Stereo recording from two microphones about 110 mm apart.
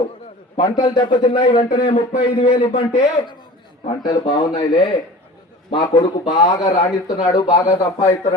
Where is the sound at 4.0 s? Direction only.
45° left (ahead or behind).